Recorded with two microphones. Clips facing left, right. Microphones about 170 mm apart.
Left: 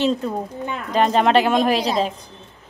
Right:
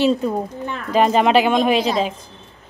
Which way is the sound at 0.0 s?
10° right (ahead or behind).